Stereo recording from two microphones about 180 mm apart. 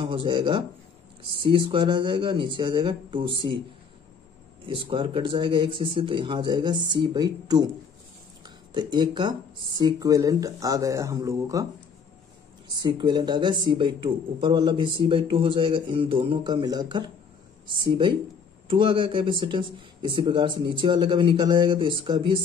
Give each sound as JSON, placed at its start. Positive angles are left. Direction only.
{"t": 0.0, "sound": "speech", "side_deg": -30}
{"t": 4.6, "sound": "speech", "side_deg": -30}
{"t": 8.7, "sound": "speech", "side_deg": -25}
{"t": 12.6, "sound": "speech", "side_deg": -25}
{"t": 18.7, "sound": "speech", "side_deg": -30}